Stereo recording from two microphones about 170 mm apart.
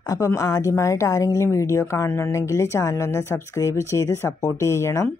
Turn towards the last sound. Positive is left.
turn(degrees=15)  # may be behind; listen again after turning